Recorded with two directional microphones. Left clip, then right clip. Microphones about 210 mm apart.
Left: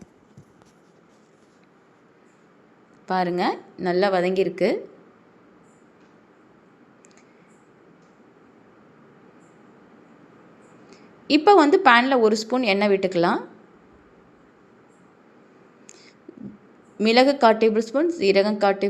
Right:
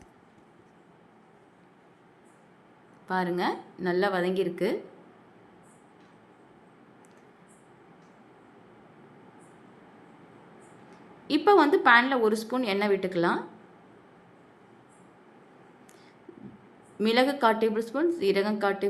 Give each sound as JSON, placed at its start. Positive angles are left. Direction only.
{"t": 3.1, "sound": "a woman's voice", "side_deg": 15}
{"t": 11.3, "sound": "a woman's voice", "side_deg": 15}
{"t": 17.0, "sound": "a woman's voice", "side_deg": 15}